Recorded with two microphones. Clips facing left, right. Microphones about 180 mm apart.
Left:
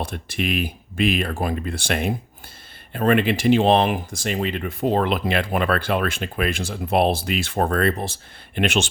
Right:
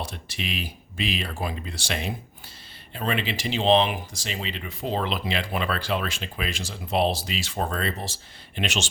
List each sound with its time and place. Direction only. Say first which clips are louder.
0.0 s speech: left 7 dB; 55° left (ahead or behind)